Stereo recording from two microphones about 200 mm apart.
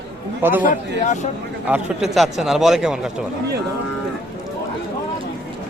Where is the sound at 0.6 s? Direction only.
35° left (ahead or behind).